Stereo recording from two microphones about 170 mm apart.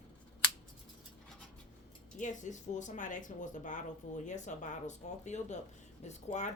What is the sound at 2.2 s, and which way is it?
Speech, 45° left (ahead or behind).